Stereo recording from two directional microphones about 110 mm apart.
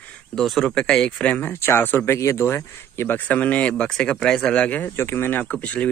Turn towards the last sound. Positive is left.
turn(degrees=10)  # may be behind; listen again after turning